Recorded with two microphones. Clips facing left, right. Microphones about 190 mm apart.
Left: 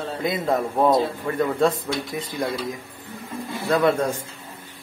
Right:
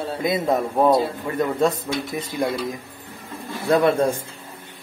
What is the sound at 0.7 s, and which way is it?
Speech, 10° right (ahead or behind).